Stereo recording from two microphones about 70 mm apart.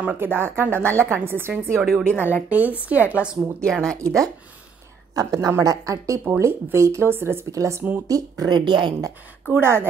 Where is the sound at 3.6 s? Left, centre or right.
Centre.